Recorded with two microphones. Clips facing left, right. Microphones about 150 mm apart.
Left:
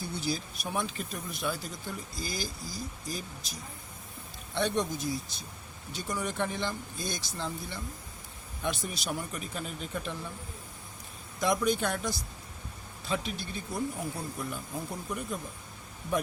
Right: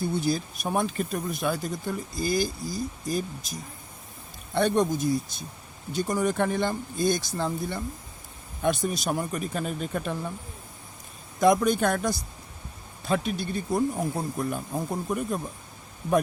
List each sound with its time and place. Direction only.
0.0 s speech: 50° right (ahead or behind)
4.5 s speech: 50° right (ahead or behind)
11.3 s speech: 50° right (ahead or behind)